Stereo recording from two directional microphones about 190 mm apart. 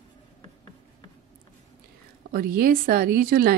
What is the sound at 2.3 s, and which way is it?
Speech, 50° right (ahead or behind).